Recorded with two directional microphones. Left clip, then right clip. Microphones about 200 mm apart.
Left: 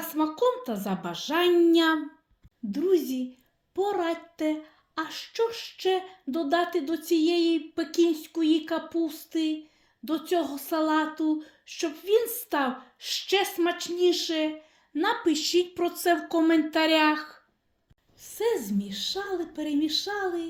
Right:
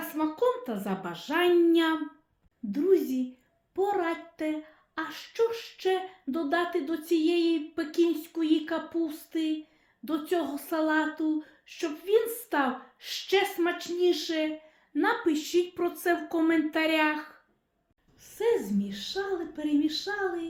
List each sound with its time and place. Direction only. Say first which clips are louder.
0.1 s speech: left 2 dB; 40° left (ahead or behind)
2.6 s a sound: even; 40° left (ahead or behind)
18.2 s a woman's voice: even; 40° left (ahead or behind)